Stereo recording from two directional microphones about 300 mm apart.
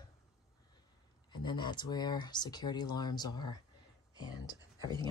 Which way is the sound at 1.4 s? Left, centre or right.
Centre.